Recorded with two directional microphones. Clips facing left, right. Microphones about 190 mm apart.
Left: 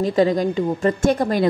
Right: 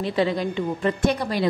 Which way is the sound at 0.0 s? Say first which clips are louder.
Left 5 dB; 45° left (ahead or behind).